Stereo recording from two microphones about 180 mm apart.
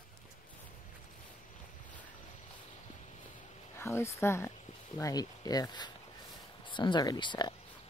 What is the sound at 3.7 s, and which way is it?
Speech, 15° left (ahead or behind).